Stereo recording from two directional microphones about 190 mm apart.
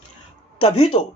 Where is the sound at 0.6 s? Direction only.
30° left (ahead or behind).